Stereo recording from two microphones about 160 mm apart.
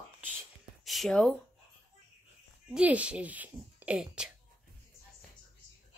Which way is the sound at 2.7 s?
10° right (ahead or behind).